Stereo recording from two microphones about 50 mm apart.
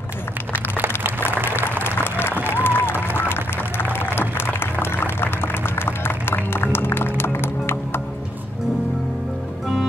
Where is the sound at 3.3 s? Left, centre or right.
Left.